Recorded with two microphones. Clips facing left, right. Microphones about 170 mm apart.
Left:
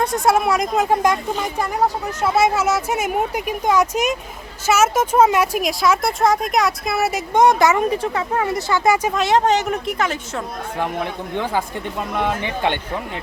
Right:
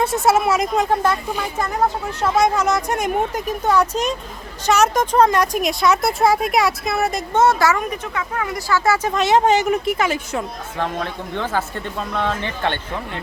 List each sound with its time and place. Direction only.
0.0 s a woman's voice: 5° right (ahead or behind)
0.9 s a woman's voice: 15° left (ahead or behind)
7.9 s speech: 30° left (ahead or behind); by 9.1 s 15° left (ahead or behind)
9.1 s speech: centre (ahead or behind)
10.8 s speech: 15° left (ahead or behind)